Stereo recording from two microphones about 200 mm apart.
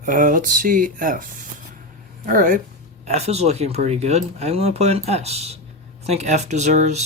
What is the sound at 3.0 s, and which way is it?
Speech, 35° right (ahead or behind).